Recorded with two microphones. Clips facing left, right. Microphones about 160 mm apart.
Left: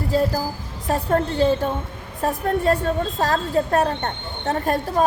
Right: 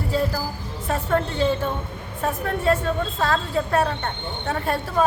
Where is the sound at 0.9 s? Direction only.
40° left (ahead or behind).